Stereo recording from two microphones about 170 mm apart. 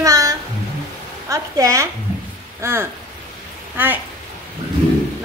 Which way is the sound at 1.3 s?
20° right (ahead or behind).